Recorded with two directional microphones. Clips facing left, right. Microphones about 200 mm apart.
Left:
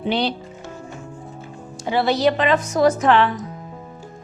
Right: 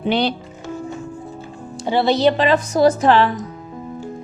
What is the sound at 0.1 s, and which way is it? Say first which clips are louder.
Speech: right 3 dB; 55° right (ahead or behind).